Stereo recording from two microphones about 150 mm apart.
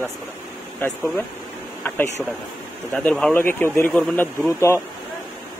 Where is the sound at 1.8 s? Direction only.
15° left (ahead or behind).